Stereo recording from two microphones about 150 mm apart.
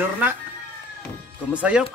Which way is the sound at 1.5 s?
5° right (ahead or behind).